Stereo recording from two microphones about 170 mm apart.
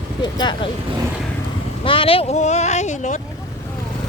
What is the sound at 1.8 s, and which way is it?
Speech, 30° left (ahead or behind).